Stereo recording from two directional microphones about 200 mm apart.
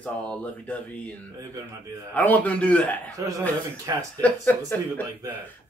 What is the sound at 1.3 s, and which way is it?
Speech, 20° right (ahead or behind).